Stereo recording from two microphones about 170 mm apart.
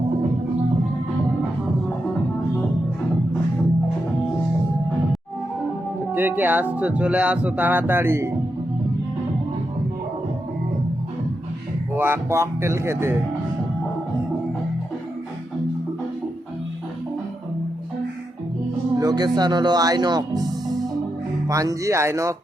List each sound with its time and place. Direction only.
6.1 s speech: 10° right (ahead or behind)
11.9 s speech: 15° right (ahead or behind)
18.9 s speech: 25° right (ahead or behind)